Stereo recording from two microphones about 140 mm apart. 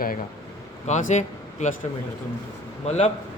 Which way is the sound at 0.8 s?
60° left (ahead or behind).